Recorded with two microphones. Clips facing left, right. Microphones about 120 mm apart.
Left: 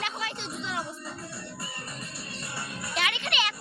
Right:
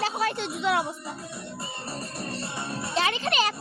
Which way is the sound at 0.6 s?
70° right (ahead or behind).